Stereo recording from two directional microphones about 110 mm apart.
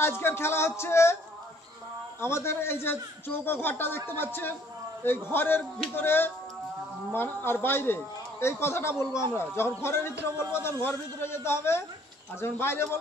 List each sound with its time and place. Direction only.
0.0 s a man's voice: 25° left (ahead or behind)
2.1 s a man's voice: 25° left (ahead or behind)